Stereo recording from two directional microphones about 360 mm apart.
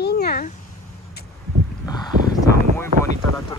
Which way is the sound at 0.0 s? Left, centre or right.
Left.